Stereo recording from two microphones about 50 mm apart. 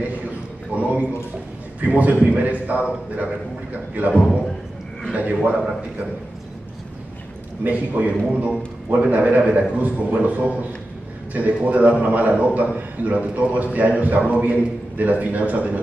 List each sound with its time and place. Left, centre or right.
0.7 s a man's voice: right
7.6 s a man's voice: right